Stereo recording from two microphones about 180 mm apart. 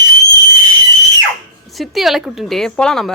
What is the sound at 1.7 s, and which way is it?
A woman's voice, centre (ahead or behind).